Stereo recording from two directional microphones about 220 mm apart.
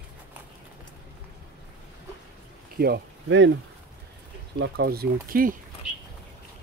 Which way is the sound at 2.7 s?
45° right (ahead or behind).